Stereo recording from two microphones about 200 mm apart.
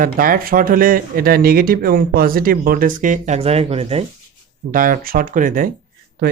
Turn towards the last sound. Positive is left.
turn(degrees=-40)  # may be behind; listen again after turning